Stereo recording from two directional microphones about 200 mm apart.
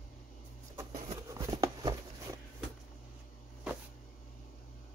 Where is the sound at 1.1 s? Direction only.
20° right (ahead or behind).